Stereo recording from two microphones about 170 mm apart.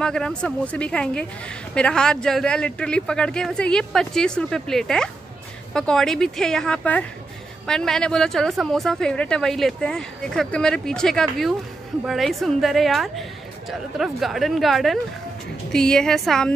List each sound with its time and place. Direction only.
0.0 s speech: 5° left (ahead or behind)